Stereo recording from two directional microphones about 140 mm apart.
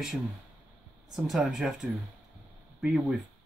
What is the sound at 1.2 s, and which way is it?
Speech, 5° right (ahead or behind).